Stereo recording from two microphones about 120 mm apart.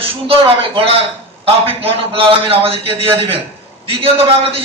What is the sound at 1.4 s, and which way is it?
A man's voice, 55° right (ahead or behind).